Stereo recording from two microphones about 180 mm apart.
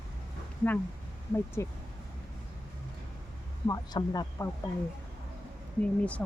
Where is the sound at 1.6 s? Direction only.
15° left (ahead or behind).